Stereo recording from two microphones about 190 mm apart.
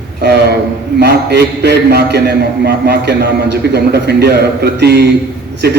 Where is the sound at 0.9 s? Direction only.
60° right (ahead or behind).